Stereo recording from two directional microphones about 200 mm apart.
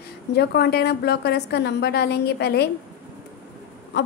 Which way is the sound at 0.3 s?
55° left (ahead or behind).